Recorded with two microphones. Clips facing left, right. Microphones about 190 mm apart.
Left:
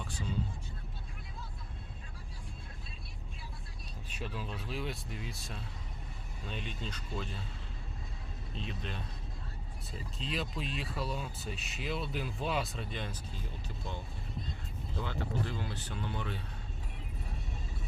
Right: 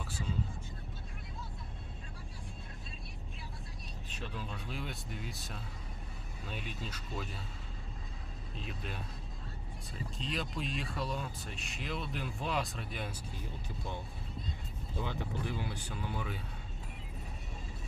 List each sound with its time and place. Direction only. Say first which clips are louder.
4.1 s speech: left 2 dB; 5° left (ahead or behind)
8.5 s speech: left 2 dB; 5° right (ahead or behind)
10.2 s speech: left 1 dB; centre (ahead or behind)
14.9 s speech: left 1 dB; 15° right (ahead or behind)